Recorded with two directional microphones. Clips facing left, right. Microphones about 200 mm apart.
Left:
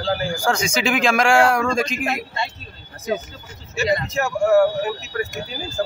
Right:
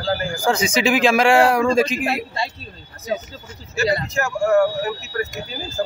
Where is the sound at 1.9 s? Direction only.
35° right (ahead or behind).